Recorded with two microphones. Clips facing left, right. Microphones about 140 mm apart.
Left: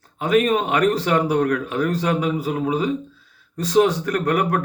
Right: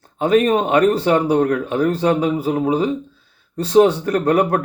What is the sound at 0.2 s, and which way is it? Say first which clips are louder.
Speech: right 3 dB; 30° right (ahead or behind).